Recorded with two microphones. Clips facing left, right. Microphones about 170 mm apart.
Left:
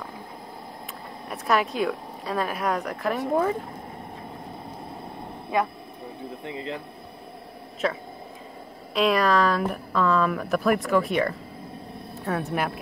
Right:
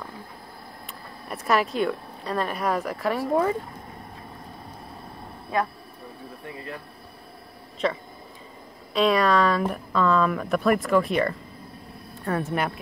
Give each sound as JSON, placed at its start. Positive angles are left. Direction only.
{"t": 1.3, "sound": "speech", "side_deg": 0}
{"t": 6.4, "sound": "speech", "side_deg": 20}
{"t": 7.8, "sound": "speech", "side_deg": 0}